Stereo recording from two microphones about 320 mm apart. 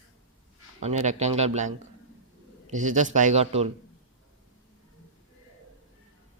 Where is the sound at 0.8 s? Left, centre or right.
Right.